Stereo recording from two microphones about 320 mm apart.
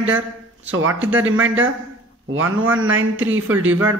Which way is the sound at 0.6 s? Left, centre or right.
Right.